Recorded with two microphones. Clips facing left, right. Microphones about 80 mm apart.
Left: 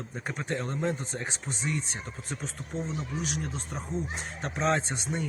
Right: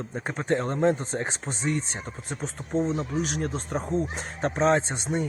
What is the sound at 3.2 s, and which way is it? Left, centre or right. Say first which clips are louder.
Speech: right 6 dB; right.